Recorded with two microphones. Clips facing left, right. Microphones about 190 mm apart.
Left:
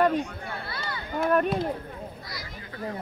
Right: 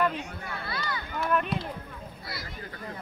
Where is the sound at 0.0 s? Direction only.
35° left (ahead or behind).